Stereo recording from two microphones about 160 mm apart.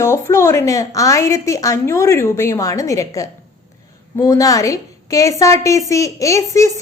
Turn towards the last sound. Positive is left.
turn(degrees=20)  # may be behind; listen again after turning